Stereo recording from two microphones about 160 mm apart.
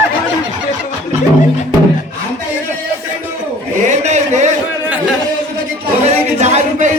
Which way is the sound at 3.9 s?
45° right (ahead or behind).